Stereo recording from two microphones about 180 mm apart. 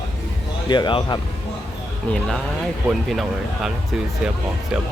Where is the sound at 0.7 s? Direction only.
25° left (ahead or behind).